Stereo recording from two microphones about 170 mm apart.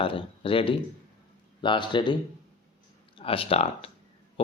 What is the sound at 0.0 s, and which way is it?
Speech, 30° left (ahead or behind).